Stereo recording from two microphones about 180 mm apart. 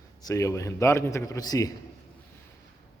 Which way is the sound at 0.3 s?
15° left (ahead or behind).